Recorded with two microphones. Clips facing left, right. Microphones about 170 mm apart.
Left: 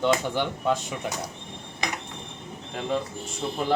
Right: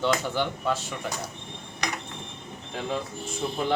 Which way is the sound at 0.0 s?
15° left (ahead or behind).